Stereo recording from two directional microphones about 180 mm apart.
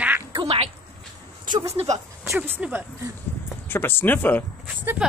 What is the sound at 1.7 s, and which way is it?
Speech, 35° right (ahead or behind).